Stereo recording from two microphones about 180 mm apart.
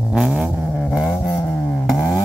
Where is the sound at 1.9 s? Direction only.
Centre (ahead or behind).